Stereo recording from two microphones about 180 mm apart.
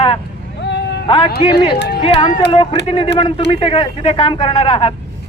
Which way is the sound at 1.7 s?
60° left (ahead or behind).